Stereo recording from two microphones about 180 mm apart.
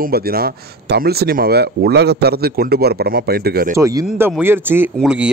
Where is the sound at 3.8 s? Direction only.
20° right (ahead or behind).